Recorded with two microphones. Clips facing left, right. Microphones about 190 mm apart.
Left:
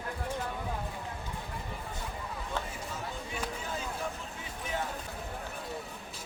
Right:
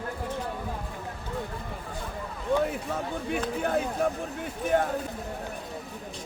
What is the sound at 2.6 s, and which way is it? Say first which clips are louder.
Speech: right 8 dB; 60° right (ahead or behind).